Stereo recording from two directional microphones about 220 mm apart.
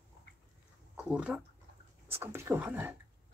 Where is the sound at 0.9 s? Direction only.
5° right (ahead or behind).